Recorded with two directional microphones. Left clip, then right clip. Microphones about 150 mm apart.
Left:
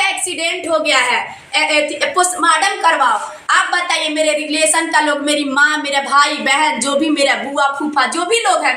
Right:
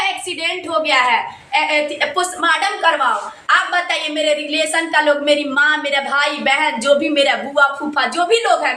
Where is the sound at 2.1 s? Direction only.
10° right (ahead or behind).